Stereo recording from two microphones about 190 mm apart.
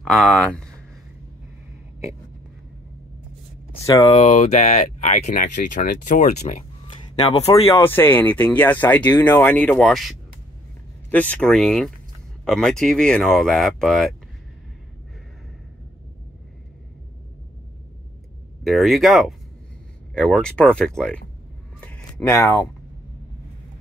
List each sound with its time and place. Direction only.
0.0 s speech: centre (ahead or behind)
3.8 s speech: 25° left (ahead or behind)
4.1 s speech: 35° left (ahead or behind)
7.7 s speech: 10° left (ahead or behind)
18.6 s speech: centre (ahead or behind)
21.7 s a sound: 5° left (ahead or behind)